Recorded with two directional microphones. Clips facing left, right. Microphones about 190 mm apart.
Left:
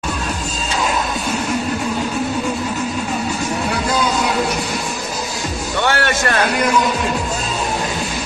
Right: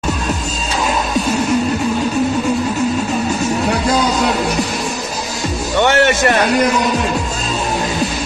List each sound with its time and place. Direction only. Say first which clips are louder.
5.8 s speech: right 6 dB; 20° right (ahead or behind)